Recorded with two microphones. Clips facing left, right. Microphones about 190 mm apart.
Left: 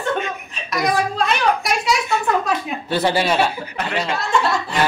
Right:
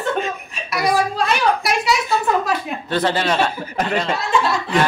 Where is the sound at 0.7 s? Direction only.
5° right (ahead or behind).